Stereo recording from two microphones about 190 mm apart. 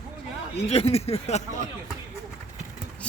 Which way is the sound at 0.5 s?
30° left (ahead or behind).